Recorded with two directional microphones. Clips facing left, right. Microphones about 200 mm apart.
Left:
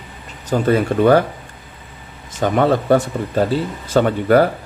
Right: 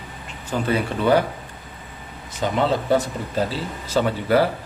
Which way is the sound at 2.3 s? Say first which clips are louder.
Left 5 dB; 50° left (ahead or behind).